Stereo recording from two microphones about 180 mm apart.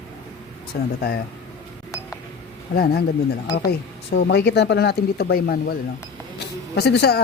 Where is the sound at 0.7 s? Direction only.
60° left (ahead or behind).